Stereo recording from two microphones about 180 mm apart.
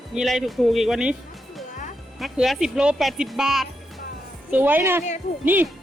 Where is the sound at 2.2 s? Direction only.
Centre (ahead or behind).